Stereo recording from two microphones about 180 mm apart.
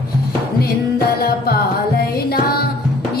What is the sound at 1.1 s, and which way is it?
Music, 60° left (ahead or behind).